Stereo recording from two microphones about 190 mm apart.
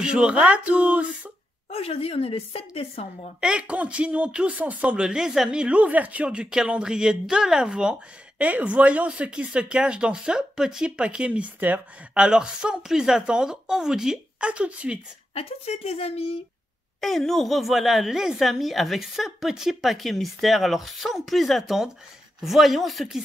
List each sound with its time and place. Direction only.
0.0 s speech: 5° right (ahead or behind)
1.7 s a woman's voice: 30° left (ahead or behind)
3.3 s speech: 5° right (ahead or behind)
15.3 s a woman's voice: 30° left (ahead or behind)
17.0 s speech: centre (ahead or behind)